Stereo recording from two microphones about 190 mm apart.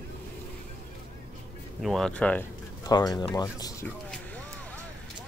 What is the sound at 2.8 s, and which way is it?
Speech, 20° left (ahead or behind).